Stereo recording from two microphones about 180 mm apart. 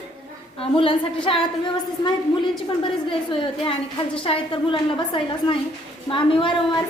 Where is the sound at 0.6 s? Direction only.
30° left (ahead or behind).